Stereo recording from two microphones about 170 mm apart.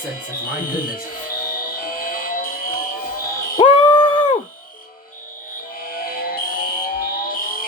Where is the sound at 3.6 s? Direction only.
30° left (ahead or behind).